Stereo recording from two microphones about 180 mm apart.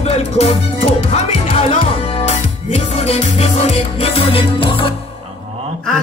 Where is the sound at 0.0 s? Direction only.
35° left (ahead or behind).